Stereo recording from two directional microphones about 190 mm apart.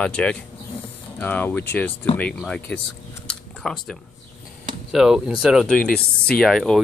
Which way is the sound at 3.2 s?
5° left (ahead or behind).